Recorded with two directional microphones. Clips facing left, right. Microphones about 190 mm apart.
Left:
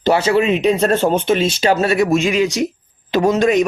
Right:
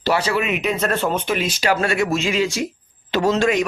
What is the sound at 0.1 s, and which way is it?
Speech, 25° left (ahead or behind).